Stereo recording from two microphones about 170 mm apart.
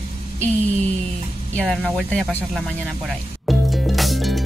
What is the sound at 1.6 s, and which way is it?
Speech, 5° left (ahead or behind).